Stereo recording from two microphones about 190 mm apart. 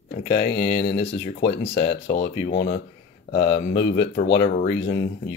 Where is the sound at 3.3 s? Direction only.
65° left (ahead or behind).